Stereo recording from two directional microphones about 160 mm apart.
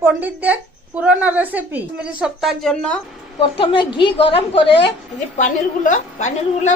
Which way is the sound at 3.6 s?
30° left (ahead or behind).